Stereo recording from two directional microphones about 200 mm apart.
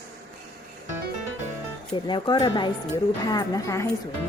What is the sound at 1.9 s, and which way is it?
A woman's voice, 25° left (ahead or behind).